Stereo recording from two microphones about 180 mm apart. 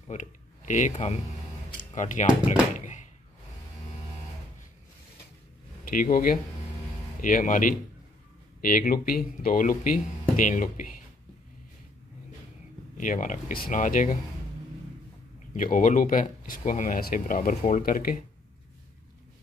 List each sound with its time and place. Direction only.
0.1 s speech: 45° left (ahead or behind)
5.9 s speech: 55° left (ahead or behind)
12.9 s speech: 45° left (ahead or behind)
15.5 s speech: 50° left (ahead or behind)